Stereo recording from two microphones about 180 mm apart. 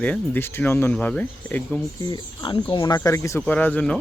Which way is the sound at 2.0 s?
25° left (ahead or behind).